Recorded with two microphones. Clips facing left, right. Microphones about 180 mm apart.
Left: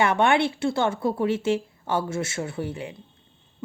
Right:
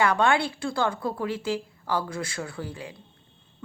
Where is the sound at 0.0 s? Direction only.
25° left (ahead or behind).